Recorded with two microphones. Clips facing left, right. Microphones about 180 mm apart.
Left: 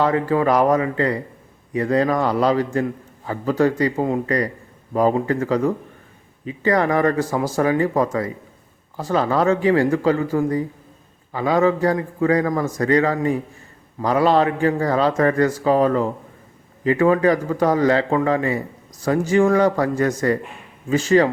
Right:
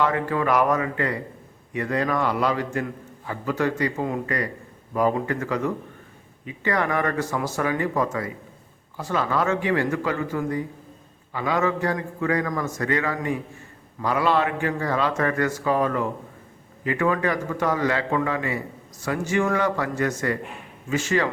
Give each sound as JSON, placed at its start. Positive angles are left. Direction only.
{"t": 0.0, "sound": "a man's voice", "side_deg": 30}
{"t": 11.3, "sound": "a man's voice", "side_deg": 35}